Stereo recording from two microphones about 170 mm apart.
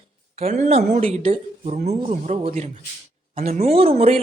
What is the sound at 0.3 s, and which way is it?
Speech, 40° right (ahead or behind).